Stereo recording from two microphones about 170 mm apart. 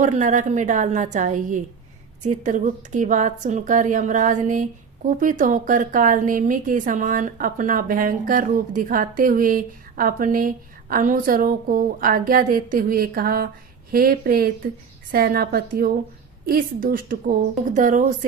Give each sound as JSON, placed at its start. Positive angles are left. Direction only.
{"t": 0.0, "sound": "a woman's voice", "side_deg": -45}